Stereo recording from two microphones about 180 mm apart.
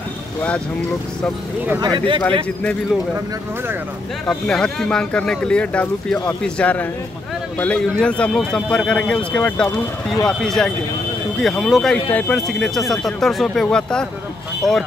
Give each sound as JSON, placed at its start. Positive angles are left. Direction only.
{"t": 1.8, "sound": "speech", "side_deg": -25}
{"t": 4.3, "sound": "speech", "side_deg": 5}